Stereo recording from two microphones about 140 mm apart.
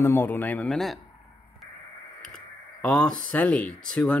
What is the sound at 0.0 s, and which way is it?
Speech, 15° left (ahead or behind).